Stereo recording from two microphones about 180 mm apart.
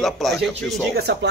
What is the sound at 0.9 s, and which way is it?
Speech, 65° right (ahead or behind).